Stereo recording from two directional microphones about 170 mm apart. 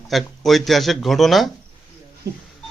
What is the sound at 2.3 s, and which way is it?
Speech, 75° right (ahead or behind).